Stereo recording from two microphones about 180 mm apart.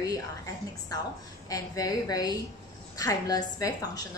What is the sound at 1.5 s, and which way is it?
A woman's voice, 20° left (ahead or behind).